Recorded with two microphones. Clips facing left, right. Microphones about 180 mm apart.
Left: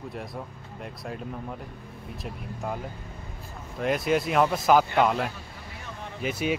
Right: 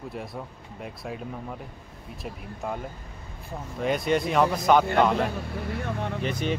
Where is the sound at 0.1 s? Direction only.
Centre (ahead or behind).